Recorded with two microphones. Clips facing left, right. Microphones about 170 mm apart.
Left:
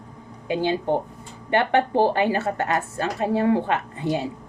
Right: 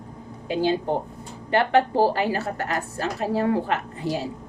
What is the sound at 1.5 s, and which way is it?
A woman's voice, 20° left (ahead or behind).